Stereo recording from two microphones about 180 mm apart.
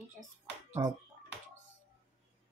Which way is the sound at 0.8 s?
15° right (ahead or behind).